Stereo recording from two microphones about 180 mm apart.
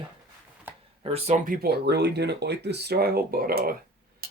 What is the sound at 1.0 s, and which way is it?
Speech, 35° right (ahead or behind).